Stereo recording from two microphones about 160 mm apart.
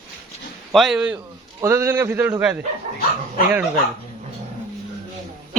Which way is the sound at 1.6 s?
15° right (ahead or behind).